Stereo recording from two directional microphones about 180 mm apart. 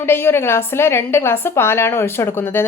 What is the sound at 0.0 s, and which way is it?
Speech, 15° left (ahead or behind).